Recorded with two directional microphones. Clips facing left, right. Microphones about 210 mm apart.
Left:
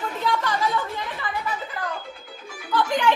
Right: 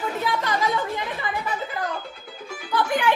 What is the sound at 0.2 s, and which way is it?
Chatter, 15° right (ahead or behind).